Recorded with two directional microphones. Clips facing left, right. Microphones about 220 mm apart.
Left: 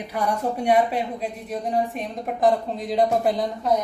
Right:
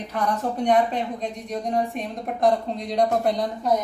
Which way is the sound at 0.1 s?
10° left (ahead or behind).